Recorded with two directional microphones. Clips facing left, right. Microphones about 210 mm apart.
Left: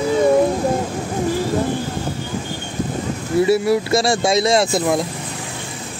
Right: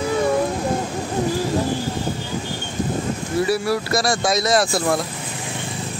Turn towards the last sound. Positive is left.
turn(degrees=20)  # may be behind; listen again after turning